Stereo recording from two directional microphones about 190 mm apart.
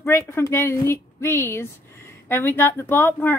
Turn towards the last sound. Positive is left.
turn(degrees=10)  # may be behind; listen again after turning